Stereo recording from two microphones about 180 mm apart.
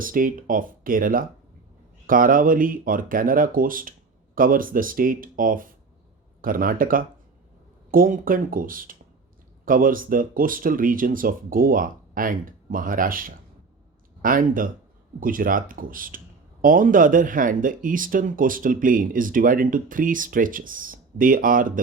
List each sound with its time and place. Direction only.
0.0 s speech: 50° right (ahead or behind)